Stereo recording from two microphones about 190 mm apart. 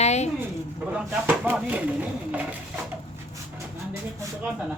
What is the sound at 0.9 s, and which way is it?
Speech, 5° right (ahead or behind).